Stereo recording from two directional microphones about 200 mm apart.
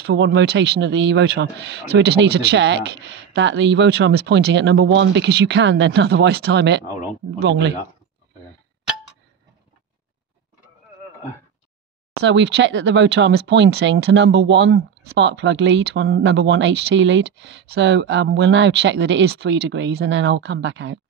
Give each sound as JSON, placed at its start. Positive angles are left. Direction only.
{"t": 0.0, "sound": "speech", "side_deg": -60}
{"t": 12.3, "sound": "speech", "side_deg": -65}